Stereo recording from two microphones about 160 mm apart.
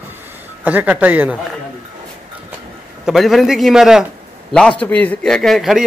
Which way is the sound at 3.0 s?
Centre (ahead or behind).